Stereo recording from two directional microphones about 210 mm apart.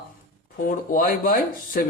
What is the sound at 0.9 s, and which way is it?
Speech, 40° left (ahead or behind).